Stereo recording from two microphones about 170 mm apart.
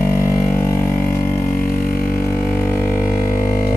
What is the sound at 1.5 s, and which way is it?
Music, 55° left (ahead or behind).